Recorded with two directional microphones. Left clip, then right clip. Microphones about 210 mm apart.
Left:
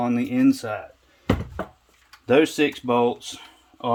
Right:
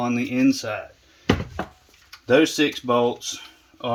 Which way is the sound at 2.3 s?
30° left (ahead or behind).